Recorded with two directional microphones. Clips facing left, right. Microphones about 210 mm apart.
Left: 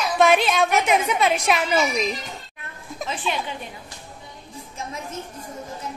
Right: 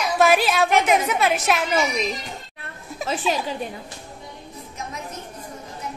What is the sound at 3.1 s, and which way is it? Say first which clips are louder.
Speech: right 4 dB; 40° right (ahead or behind).